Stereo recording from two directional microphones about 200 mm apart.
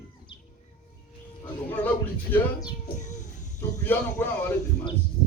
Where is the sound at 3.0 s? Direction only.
35° left (ahead or behind).